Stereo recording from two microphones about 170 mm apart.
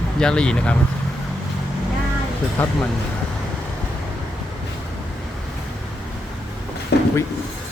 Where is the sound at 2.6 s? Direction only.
10° left (ahead or behind).